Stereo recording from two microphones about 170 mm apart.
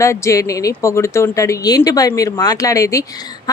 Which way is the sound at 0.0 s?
15° left (ahead or behind).